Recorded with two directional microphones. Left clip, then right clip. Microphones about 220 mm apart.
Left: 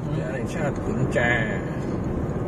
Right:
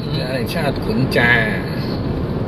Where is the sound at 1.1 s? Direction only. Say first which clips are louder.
Right 8 dB; 20° right (ahead or behind).